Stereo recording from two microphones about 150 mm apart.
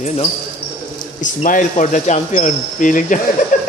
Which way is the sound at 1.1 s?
60° left (ahead or behind).